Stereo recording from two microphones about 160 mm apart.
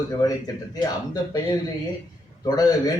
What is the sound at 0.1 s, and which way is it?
Speech, 20° left (ahead or behind).